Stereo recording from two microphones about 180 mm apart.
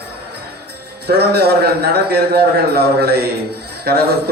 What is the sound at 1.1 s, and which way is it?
A man's voice, 65° right (ahead or behind).